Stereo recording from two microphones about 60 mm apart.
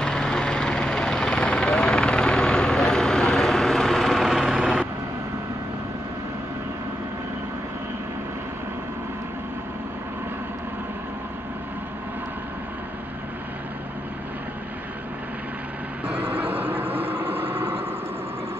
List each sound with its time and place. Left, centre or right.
0.0 s helicopter: centre
16.1 s vehicle: right